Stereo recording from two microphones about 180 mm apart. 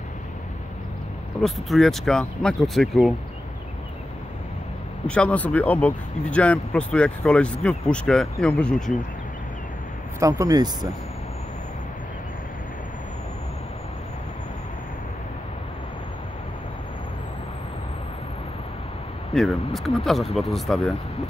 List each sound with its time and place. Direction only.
1.4 s speech: centre (ahead or behind)
5.0 s speech: 5° left (ahead or behind)
10.2 s speech: 15° right (ahead or behind)
19.3 s speech: centre (ahead or behind)